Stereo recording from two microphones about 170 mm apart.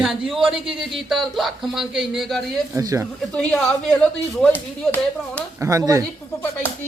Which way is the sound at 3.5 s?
5° left (ahead or behind).